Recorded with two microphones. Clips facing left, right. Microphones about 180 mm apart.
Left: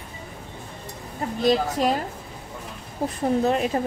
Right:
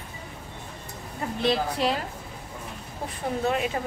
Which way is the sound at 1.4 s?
45° left (ahead or behind).